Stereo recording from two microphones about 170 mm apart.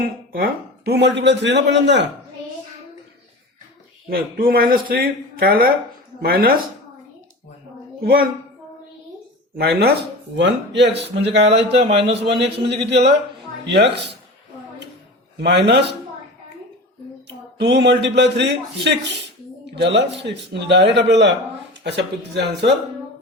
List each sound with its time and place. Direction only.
0.0 s speech: 60° right (ahead or behind); by 2.0 s 90° right
4.1 s speech: 60° right (ahead or behind)
8.0 s speech: 60° right (ahead or behind)
9.6 s speech: 70° right (ahead or behind)
10.3 s speech: 90° right
11.8 s a man's voice: 30° right (ahead or behind)
12.2 s speech: 80° right
15.4 s speech: 85° right
17.6 s speech: 90° right